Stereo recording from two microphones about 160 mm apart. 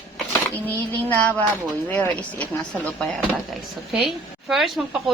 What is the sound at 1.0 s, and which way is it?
Speech, 10° left (ahead or behind).